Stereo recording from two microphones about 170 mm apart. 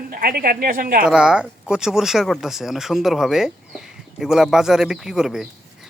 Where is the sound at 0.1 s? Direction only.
60° right (ahead or behind).